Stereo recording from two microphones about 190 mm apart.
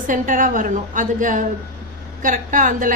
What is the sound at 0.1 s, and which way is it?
A woman's voice, 45° right (ahead or behind).